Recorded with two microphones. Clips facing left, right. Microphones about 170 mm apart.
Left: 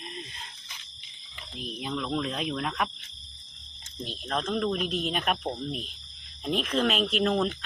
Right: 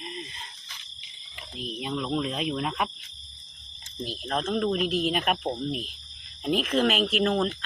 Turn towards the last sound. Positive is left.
turn(degrees=0)  # may be behind; listen again after turning